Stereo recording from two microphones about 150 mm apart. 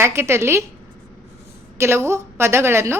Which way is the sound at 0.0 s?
15° right (ahead or behind).